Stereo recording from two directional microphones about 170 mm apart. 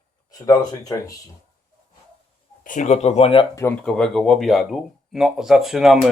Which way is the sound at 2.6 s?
45° left (ahead or behind).